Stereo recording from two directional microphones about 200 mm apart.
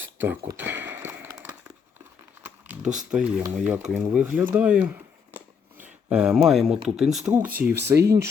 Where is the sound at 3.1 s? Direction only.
5° right (ahead or behind).